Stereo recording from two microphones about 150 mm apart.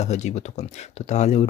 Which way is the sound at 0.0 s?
50° left (ahead or behind).